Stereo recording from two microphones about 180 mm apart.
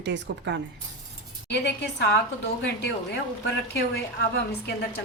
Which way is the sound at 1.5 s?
65° left (ahead or behind).